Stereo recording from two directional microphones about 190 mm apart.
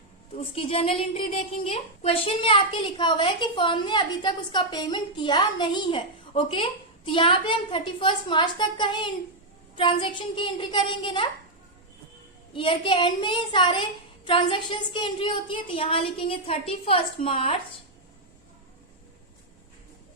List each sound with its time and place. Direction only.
0.3 s a woman's voice: 30° left (ahead or behind)
12.5 s a woman's voice: 25° left (ahead or behind)